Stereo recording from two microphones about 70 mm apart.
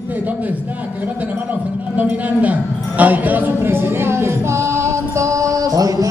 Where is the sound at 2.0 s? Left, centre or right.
Right.